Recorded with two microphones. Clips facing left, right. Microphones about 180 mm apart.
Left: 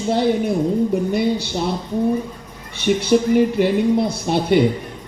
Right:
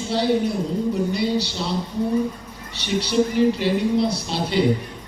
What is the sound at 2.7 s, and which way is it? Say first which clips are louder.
A man's voice: left 4 dB; 50° left (ahead or behind).